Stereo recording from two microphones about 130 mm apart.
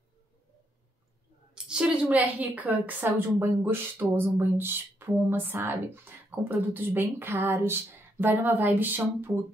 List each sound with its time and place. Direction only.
1.5 s a woman's voice: 5° right (ahead or behind)